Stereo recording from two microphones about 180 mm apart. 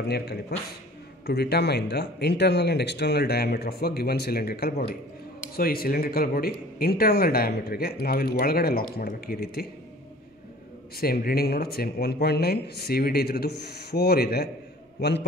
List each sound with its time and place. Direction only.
0.1 s speech: 65° left (ahead or behind)
11.0 s a man's voice: 55° left (ahead or behind)